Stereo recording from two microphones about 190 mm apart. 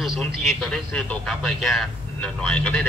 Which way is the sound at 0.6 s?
Centre (ahead or behind).